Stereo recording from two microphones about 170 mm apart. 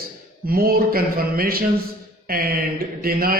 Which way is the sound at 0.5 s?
60° right (ahead or behind).